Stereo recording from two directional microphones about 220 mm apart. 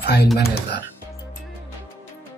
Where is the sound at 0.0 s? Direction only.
50° left (ahead or behind).